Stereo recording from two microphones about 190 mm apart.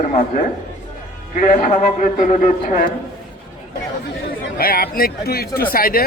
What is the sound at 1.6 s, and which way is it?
A man's voice, 40° left (ahead or behind).